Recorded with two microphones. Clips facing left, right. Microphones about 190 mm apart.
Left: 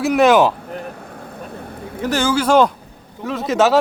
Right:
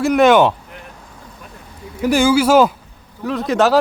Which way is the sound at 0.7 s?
55° left (ahead or behind).